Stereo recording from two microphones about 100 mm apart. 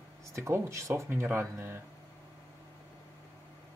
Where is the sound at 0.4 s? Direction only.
30° right (ahead or behind).